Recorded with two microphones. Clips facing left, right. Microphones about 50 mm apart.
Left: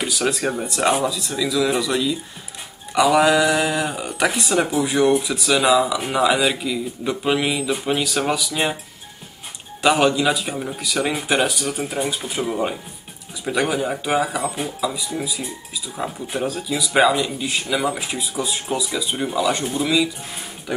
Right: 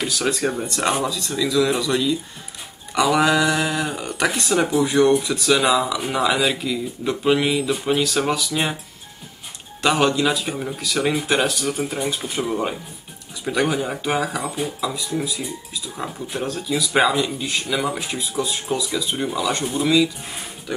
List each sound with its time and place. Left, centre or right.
0.0 s speech: centre
9.8 s speech: centre
14.4 s speech: centre
14.8 s speech: centre